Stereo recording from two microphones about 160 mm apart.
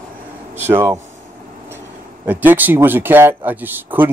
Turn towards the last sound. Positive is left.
turn(degrees=-10)  # may be behind; listen again after turning